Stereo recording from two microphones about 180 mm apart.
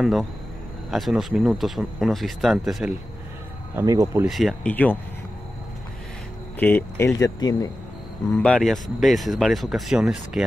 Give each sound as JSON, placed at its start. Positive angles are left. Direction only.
{"t": 0.0, "sound": "speech", "side_deg": 0}
{"t": 3.7, "sound": "speech", "side_deg": -20}
{"t": 4.2, "sound": "speech", "side_deg": 0}
{"t": 6.6, "sound": "speech", "side_deg": 15}
{"t": 8.4, "sound": "speech", "side_deg": 5}